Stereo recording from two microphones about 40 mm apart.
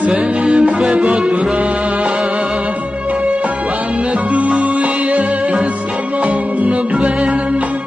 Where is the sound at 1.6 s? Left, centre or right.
Right.